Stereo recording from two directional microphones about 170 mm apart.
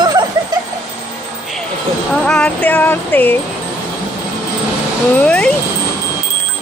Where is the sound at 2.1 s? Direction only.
5° left (ahead or behind).